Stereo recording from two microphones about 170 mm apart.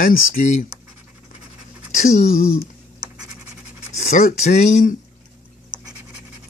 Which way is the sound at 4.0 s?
45° left (ahead or behind).